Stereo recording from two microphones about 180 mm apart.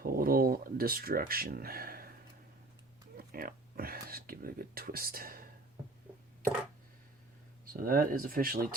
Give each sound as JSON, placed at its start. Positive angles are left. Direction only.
{"t": 0.0, "sound": "speech", "side_deg": -55}
{"t": 3.2, "sound": "speech", "side_deg": -55}
{"t": 7.7, "sound": "speech", "side_deg": -50}